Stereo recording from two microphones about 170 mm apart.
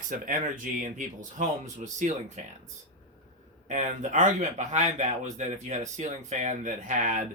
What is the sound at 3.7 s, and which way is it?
Speech, 45° right (ahead or behind).